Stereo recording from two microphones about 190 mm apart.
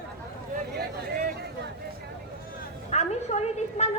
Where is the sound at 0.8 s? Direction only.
55° right (ahead or behind).